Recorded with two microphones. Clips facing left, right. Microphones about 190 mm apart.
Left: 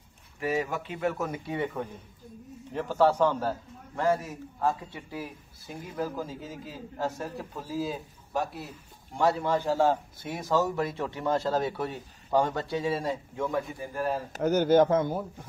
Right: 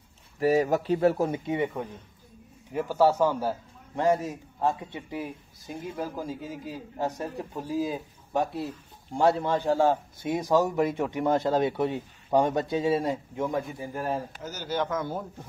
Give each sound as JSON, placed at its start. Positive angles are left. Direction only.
{"t": 0.4, "sound": "speech", "side_deg": -40}
{"t": 2.7, "sound": "a man's voice", "side_deg": -10}
{"t": 5.9, "sound": "a man's voice", "side_deg": -10}
{"t": 14.4, "sound": "speech", "side_deg": 60}